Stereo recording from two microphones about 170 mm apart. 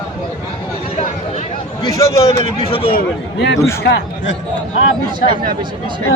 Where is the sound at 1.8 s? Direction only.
20° left (ahead or behind).